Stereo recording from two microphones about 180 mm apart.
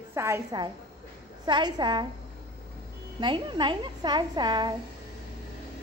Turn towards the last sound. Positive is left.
turn(degrees=-25)  # may be behind; listen again after turning